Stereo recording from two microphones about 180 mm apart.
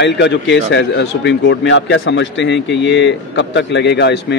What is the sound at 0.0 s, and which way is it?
A man's voice, 80° left.